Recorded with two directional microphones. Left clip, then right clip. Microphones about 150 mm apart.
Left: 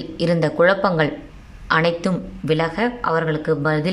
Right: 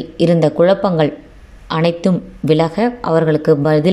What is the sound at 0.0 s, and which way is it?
Speech, 20° right (ahead or behind).